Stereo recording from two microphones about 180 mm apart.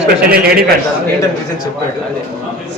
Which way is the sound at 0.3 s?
60° right (ahead or behind).